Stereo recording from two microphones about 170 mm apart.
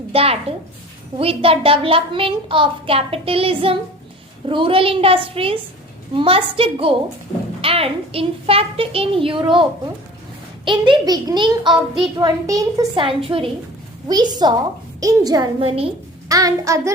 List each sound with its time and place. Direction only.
0.1 s a child's voice: 35° right (ahead or behind); by 12.9 s 20° right (ahead or behind)
13.0 s a child's voice: 30° right (ahead or behind)
16.3 s child singing: 20° right (ahead or behind)